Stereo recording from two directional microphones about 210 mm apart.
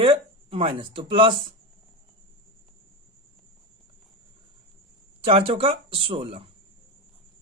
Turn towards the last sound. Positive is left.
turn(degrees=-25)  # may be behind; listen again after turning